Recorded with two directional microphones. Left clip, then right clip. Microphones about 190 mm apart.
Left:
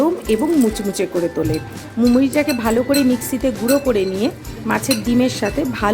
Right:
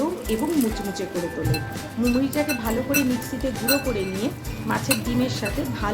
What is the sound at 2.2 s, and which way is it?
Speech, 45° left (ahead or behind).